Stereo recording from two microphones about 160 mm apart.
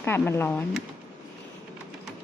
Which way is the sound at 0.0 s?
15° left (ahead or behind).